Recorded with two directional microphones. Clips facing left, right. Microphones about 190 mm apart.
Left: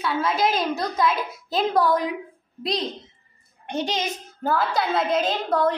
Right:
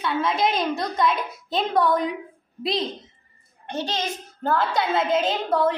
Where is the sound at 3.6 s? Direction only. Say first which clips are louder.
Left 2 dB; 15° left (ahead or behind).